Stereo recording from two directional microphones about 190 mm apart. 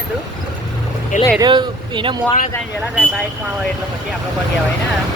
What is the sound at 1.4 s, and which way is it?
Speech, 25° right (ahead or behind).